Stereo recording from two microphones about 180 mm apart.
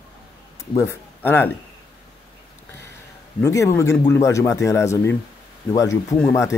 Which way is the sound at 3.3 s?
15° left (ahead or behind).